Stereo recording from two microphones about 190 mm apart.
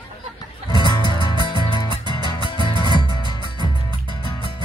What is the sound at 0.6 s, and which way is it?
Music, 25° left (ahead or behind).